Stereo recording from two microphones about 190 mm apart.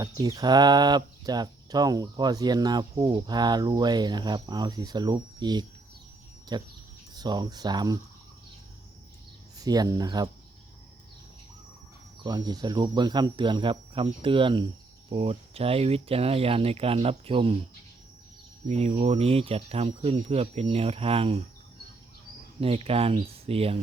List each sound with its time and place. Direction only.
0.0 s speech: 20° right (ahead or behind)
9.6 s speech: 20° right (ahead or behind)
12.2 s speech: 20° right (ahead or behind)
18.7 s speech: 35° right (ahead or behind)
22.6 s speech: 30° right (ahead or behind)